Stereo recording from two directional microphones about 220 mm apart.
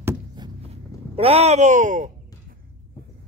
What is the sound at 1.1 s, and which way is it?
Speech, 25° right (ahead or behind).